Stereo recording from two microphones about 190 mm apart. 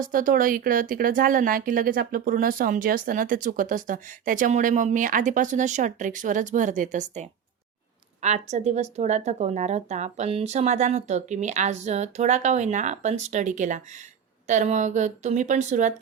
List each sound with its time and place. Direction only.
0.0 s speech: 45° right (ahead or behind)